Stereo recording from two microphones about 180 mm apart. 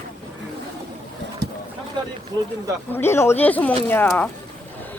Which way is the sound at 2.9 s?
15° left (ahead or behind).